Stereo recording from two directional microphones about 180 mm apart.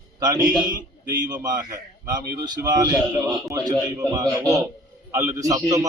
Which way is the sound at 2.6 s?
20° right (ahead or behind).